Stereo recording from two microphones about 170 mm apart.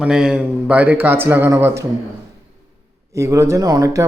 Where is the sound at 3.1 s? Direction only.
15° right (ahead or behind).